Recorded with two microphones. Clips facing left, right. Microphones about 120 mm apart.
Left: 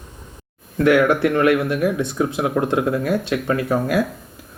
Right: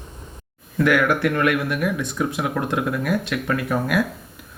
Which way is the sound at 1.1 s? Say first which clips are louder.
Left 3 dB; 25° left (ahead or behind).